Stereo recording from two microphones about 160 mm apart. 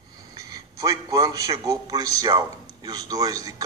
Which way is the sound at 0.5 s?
20° right (ahead or behind).